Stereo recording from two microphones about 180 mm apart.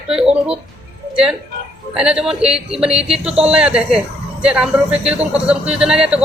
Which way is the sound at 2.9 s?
35° right (ahead or behind).